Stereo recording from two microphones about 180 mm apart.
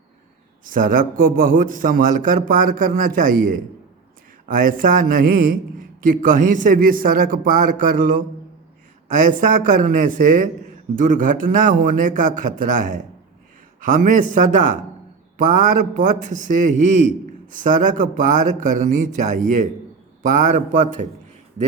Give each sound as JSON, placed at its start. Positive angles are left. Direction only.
{"t": 0.6, "sound": "a man's voice", "side_deg": -50}